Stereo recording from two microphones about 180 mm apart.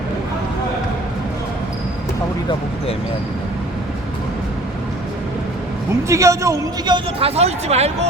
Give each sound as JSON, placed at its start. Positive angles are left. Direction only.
{"t": 6.1, "sound": "a man's voice", "side_deg": -15}